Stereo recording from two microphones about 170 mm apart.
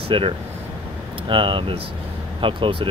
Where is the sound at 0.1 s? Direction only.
30° right (ahead or behind).